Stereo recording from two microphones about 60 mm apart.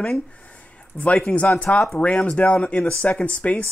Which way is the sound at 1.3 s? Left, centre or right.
Left.